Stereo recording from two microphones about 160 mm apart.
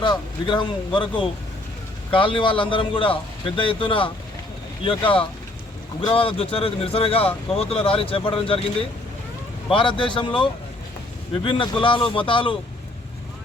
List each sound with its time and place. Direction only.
0.0 s a man's voice: 30° left (ahead or behind)
9.7 s speech: 30° left (ahead or behind)